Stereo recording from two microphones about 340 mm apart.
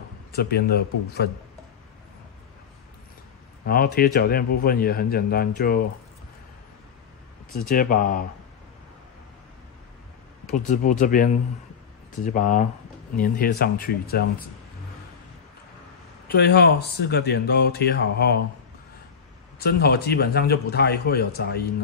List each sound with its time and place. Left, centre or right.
0.3 s speech: left
3.6 s speech: left
7.5 s speech: left
10.4 s speech: left
12.3 s speech: left
16.3 s speech: left
19.6 s speech: left